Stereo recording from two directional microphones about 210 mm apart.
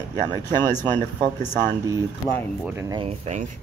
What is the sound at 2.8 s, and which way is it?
Speech, 15° right (ahead or behind).